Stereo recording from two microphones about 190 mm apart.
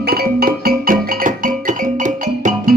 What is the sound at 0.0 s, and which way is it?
Music, 55° right (ahead or behind).